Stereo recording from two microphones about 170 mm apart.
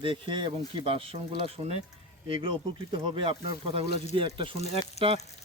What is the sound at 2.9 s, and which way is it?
Speech, 30° right (ahead or behind).